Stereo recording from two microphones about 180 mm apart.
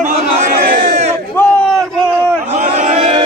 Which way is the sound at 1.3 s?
5° left (ahead or behind).